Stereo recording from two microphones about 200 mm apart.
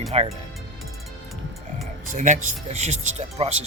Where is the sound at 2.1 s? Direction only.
35° right (ahead or behind).